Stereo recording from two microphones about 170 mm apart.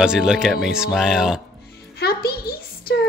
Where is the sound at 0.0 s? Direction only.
5° right (ahead or behind).